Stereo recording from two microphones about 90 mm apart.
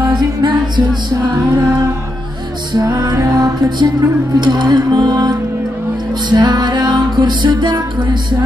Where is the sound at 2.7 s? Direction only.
50° right (ahead or behind).